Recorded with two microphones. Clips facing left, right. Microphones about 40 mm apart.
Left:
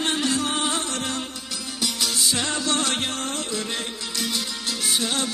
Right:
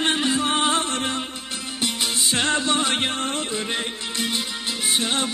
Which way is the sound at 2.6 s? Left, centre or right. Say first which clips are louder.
Right 2 dB; right.